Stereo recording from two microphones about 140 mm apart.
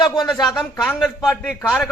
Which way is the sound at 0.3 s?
Centre (ahead or behind).